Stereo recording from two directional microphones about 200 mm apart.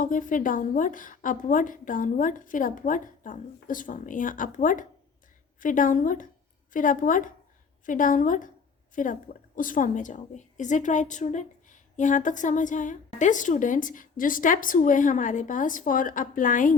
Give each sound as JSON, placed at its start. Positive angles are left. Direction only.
{"t": 0.0, "sound": "a woman's voice", "side_deg": 40}